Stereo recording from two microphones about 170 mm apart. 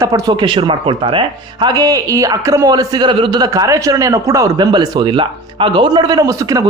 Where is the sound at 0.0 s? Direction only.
20° right (ahead or behind).